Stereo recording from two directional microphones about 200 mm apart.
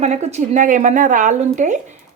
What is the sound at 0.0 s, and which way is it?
A woman's voice, 35° right (ahead or behind).